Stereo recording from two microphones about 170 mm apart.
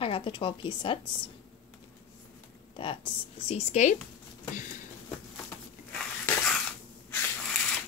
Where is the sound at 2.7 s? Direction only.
30° left (ahead or behind).